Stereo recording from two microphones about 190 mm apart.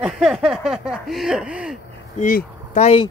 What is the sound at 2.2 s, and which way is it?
Speech, 40° left (ahead or behind).